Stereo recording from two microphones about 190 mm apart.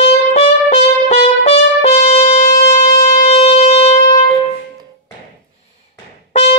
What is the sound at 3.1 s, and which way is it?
Shofar, 35° left (ahead or behind).